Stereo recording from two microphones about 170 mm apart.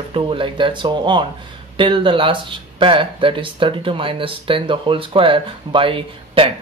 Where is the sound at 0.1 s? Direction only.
30° right (ahead or behind).